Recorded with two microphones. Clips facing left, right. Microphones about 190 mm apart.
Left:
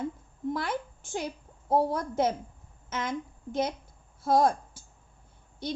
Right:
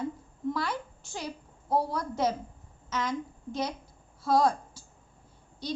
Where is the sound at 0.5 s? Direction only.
50° left (ahead or behind).